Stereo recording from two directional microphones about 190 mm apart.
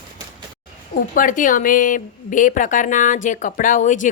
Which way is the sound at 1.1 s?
45° left (ahead or behind).